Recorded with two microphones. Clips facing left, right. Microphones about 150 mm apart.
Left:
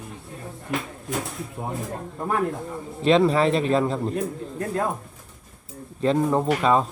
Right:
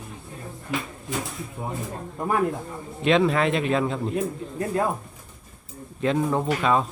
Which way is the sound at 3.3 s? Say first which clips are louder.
Left 2 dB; 30° left (ahead or behind).